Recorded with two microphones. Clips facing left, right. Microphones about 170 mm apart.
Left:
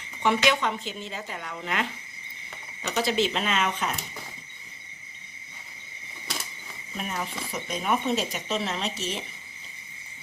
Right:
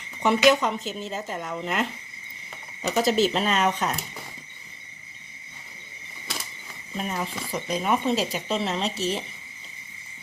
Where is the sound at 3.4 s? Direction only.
40° right (ahead or behind).